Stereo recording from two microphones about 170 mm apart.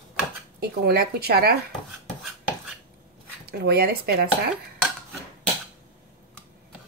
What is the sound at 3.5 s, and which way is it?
Speech, 65° right (ahead or behind).